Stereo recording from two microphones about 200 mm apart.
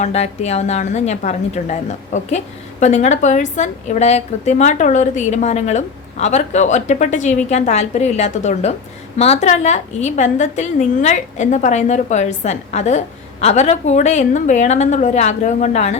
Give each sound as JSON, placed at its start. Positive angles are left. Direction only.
{"t": 0.0, "sound": "a woman's voice", "side_deg": 35}